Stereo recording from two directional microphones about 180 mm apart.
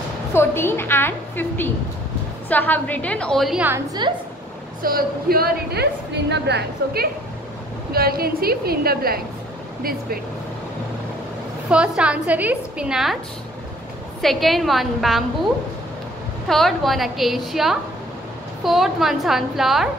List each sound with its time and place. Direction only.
0.3 s a woman's voice: 15° left (ahead or behind); by 3.8 s 10° right (ahead or behind)
4.0 s a woman's voice: 25° right (ahead or behind)
4.8 s a woman's voice: 55° right (ahead or behind)
11.7 s a woman's voice: 5° right (ahead or behind)
14.2 s a woman's voice: centre (ahead or behind)
16.4 s a woman's voice: centre (ahead or behind)